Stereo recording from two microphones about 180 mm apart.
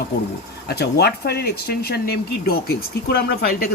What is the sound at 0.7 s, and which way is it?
Speech, 65° left (ahead or behind).